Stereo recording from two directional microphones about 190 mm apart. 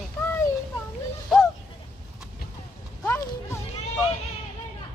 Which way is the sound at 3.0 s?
10° left (ahead or behind).